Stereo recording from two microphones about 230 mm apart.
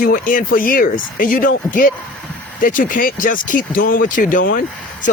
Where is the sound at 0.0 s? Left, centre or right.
Left.